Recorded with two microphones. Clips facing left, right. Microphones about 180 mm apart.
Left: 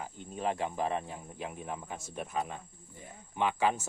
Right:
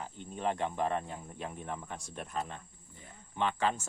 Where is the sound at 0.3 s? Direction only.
5° left (ahead or behind).